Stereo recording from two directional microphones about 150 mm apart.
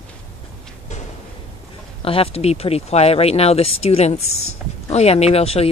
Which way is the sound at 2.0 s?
40° left (ahead or behind).